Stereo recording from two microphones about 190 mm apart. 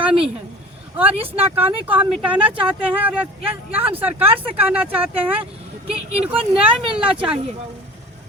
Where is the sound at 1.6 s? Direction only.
10° right (ahead or behind).